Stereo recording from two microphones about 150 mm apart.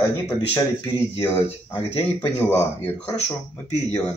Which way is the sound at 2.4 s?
15° left (ahead or behind).